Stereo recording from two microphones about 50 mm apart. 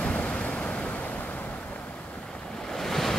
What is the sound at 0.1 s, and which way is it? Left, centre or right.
Waves, left.